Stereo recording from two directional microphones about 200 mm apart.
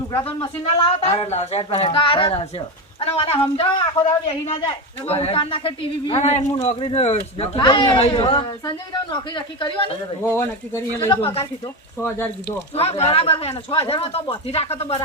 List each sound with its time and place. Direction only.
1.0 s speech: 30° left (ahead or behind)
10.2 s speech: 10° left (ahead or behind)
11.1 s speech: 30° left (ahead or behind)
12.0 s speech: 10° left (ahead or behind)
12.7 s speech: 30° left (ahead or behind)